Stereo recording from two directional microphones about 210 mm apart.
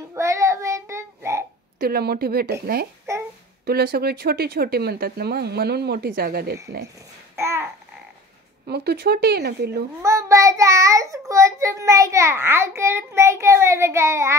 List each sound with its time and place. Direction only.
0.1 s child singing: 15° right (ahead or behind)
1.8 s speech: 45° right (ahead or behind)
7.3 s babbling: 10° right (ahead or behind)
8.6 s speech: 50° right (ahead or behind)
10.0 s a child's voice: 15° right (ahead or behind)